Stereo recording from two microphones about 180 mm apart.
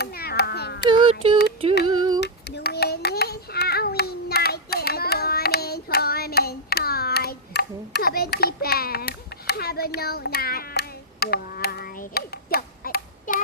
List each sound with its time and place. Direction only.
0.0 s a sound: 60° left (ahead or behind)
0.9 s child singing: 30° right (ahead or behind)
1.9 s female singing: 25° right (ahead or behind)
2.2 s child singing: 70° left (ahead or behind); by 13.4 s 50° left (ahead or behind)